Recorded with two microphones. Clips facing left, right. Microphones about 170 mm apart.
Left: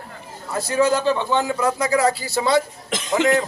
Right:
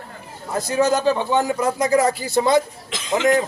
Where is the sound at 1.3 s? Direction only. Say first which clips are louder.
Right 1 dB; 15° right (ahead or behind).